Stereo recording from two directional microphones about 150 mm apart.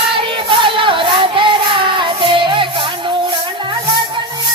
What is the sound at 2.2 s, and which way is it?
Music, 35° right (ahead or behind).